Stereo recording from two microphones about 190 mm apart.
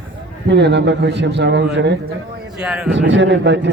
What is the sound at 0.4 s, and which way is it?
A man's voice, 65° right (ahead or behind).